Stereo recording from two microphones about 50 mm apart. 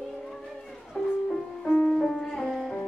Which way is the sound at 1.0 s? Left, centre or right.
Centre.